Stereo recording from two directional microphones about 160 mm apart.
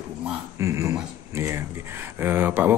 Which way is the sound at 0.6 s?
20° right (ahead or behind).